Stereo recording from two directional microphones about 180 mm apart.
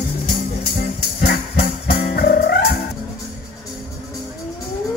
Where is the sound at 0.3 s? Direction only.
60° left (ahead or behind).